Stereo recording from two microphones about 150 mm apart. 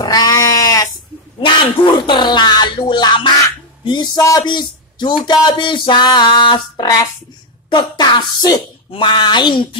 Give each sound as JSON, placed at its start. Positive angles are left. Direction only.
{"t": 0.0, "sound": "goat", "side_deg": 25}
{"t": 1.4, "sound": "speech", "side_deg": 30}